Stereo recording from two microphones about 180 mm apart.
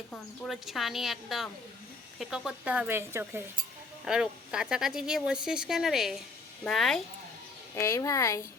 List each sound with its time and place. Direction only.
0.1 s speech: centre (ahead or behind)
7.8 s speech: 15° left (ahead or behind)